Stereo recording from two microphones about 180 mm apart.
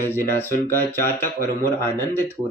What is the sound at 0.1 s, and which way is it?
Speech, 10° left (ahead or behind).